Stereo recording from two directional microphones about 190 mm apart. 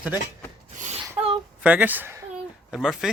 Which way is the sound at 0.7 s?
40° right (ahead or behind).